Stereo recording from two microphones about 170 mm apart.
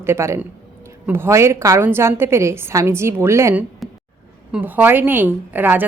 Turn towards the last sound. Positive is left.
turn(degrees=-10)  # may be behind; listen again after turning